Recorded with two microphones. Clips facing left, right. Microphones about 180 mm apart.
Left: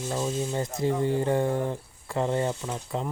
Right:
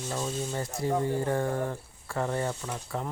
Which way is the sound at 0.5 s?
20° left (ahead or behind).